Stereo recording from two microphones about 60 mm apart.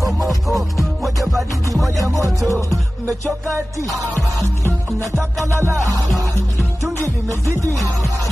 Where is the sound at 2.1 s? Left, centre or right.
Right.